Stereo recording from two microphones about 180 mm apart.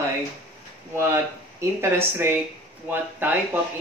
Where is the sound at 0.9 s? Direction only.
15° right (ahead or behind).